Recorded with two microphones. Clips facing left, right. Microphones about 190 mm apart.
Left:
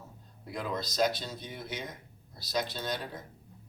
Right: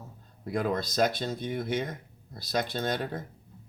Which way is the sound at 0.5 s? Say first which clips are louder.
Right 5 dB; 50° right (ahead or behind).